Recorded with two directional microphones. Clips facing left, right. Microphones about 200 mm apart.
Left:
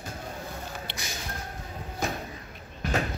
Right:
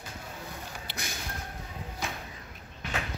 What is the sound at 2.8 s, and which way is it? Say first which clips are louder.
Door: left 7 dB; 40° left (ahead or behind).